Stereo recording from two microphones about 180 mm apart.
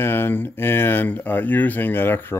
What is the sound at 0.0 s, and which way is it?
Speech, 10° left (ahead or behind).